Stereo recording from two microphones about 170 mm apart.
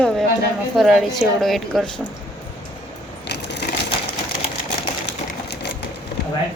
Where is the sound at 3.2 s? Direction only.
80° left.